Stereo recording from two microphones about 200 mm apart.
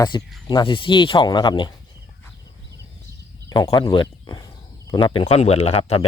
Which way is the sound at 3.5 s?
20° left (ahead or behind).